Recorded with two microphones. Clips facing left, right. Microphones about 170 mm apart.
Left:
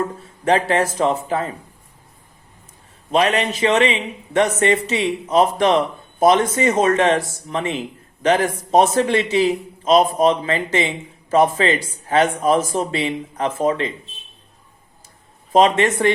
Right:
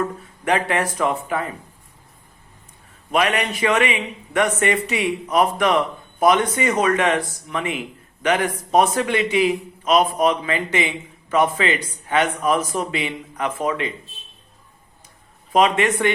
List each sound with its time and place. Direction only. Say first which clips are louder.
0.0 s speech: left 2 dB; 30° left (ahead or behind)
3.1 s a man's voice: left 3 dB; 30° left (ahead or behind)
15.5 s a man's voice: left 3 dB; 30° left (ahead or behind)